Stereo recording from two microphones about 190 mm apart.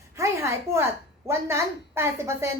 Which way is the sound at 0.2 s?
15° right (ahead or behind).